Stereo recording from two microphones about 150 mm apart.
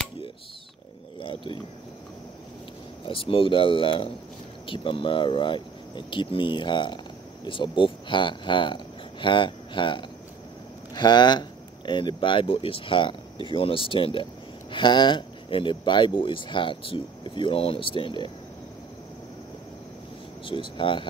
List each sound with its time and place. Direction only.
3.1 s speech: 35° left (ahead or behind)
20.4 s speech: 35° left (ahead or behind)